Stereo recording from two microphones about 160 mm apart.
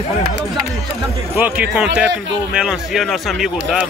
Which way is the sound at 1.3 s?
10° right (ahead or behind).